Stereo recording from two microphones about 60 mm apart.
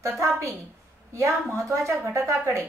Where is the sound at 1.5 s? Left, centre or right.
Right.